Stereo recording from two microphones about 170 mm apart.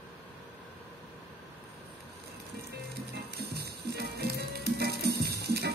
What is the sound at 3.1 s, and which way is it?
Music, 70° right (ahead or behind).